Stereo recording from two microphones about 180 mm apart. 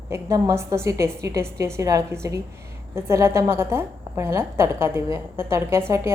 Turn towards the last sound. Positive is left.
turn(degrees=-15)  # may be behind; listen again after turning